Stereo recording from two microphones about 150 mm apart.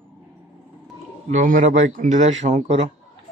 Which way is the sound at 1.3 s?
60° right (ahead or behind).